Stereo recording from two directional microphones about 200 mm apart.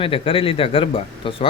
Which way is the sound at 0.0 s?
25° left (ahead or behind).